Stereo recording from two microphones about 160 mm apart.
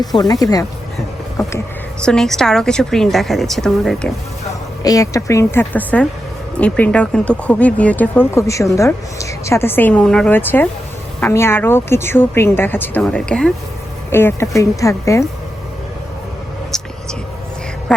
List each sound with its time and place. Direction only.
0.2 s speech: 25° left (ahead or behind)
2.0 s a woman's voice: 5° left (ahead or behind)
4.8 s speech: 20° left (ahead or behind)
16.7 s vehicle: 5° left (ahead or behind)